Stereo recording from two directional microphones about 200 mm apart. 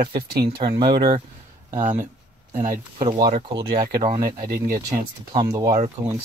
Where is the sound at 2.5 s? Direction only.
40° right (ahead or behind).